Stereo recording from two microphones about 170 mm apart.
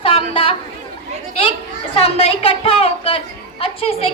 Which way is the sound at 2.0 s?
35° left (ahead or behind).